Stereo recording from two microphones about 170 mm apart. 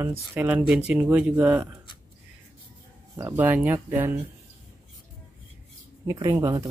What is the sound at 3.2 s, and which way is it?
Speech, 10° right (ahead or behind).